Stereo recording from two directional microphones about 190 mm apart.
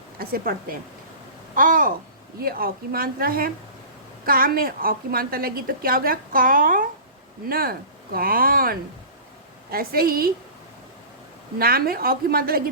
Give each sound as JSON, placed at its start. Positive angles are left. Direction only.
{"t": 0.2, "sound": "a woman's voice", "side_deg": -50}
{"t": 11.6, "sound": "a woman's voice", "side_deg": -50}